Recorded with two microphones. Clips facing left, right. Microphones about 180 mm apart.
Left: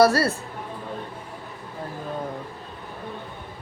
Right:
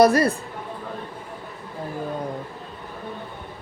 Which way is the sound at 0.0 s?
15° right (ahead or behind).